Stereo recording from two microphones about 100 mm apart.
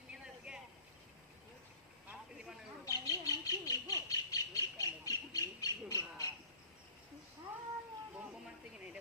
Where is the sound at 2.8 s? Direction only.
35° left (ahead or behind).